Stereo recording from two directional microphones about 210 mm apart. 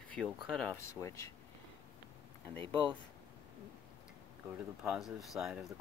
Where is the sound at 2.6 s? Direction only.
25° right (ahead or behind).